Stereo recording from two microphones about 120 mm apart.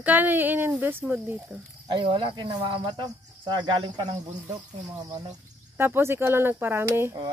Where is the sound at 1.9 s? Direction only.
40° right (ahead or behind).